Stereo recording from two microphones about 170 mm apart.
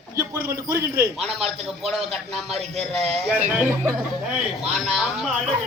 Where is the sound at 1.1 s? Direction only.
Centre (ahead or behind).